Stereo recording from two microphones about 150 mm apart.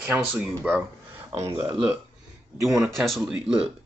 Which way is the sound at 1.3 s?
40° right (ahead or behind).